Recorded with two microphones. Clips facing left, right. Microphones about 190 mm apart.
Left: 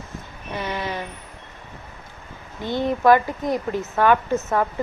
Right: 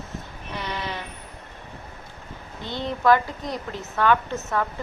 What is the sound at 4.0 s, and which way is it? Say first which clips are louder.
Speech: left 3 dB; 15° left (ahead or behind).